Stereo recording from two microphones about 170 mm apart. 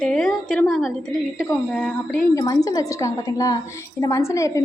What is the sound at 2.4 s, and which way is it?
A woman's voice, 20° left (ahead or behind).